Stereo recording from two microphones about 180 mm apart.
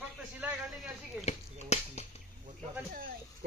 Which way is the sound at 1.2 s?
35° left (ahead or behind).